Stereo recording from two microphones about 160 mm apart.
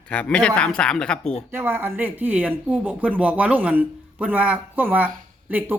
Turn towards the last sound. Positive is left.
turn(degrees=-10)  # may be behind; listen again after turning